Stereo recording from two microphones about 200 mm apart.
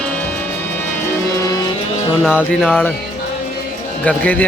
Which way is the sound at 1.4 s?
15° left (ahead or behind).